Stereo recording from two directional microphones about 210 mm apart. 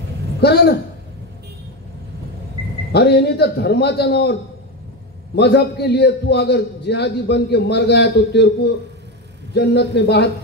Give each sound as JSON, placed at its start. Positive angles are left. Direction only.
{"t": 0.4, "sound": "a man's voice", "side_deg": 50}
{"t": 2.9, "sound": "a man's voice", "side_deg": 50}